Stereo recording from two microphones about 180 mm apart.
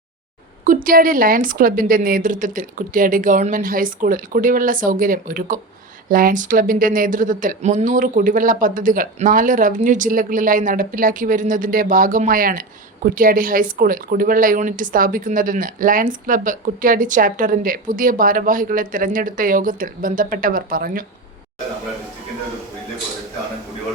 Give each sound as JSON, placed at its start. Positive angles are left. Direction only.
{"t": 0.6, "sound": "speech", "side_deg": -50}